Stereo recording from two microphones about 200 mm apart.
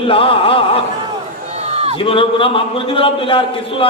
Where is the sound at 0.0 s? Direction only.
25° left (ahead or behind).